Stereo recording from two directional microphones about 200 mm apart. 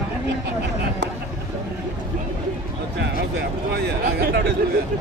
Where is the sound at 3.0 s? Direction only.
55° right (ahead or behind).